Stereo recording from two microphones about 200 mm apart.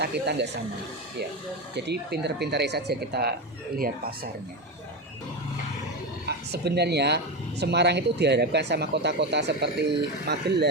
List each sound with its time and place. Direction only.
0.0 s speech: 55° right (ahead or behind)
1.7 s speech: 55° right (ahead or behind)
6.2 s speech: 55° right (ahead or behind)